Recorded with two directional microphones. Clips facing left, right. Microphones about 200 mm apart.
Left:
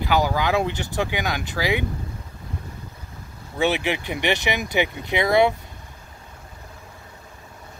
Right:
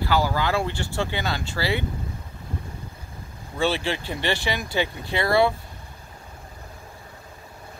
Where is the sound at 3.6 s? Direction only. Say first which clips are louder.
Left 2 dB; 15° left (ahead or behind).